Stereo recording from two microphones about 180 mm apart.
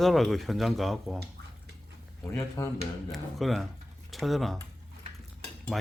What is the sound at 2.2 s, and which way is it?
Speech, 15° left (ahead or behind).